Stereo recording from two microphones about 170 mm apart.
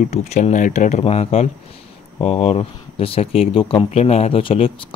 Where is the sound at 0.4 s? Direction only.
45° left (ahead or behind).